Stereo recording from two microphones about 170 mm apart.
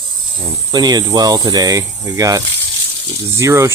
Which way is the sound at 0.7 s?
25° right (ahead or behind).